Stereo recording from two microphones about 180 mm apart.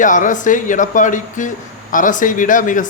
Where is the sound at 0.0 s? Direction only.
45° left (ahead or behind).